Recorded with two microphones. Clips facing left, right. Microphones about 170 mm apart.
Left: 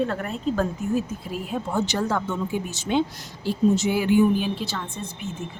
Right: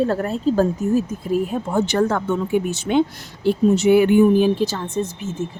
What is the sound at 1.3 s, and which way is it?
Speech, 45° right (ahead or behind).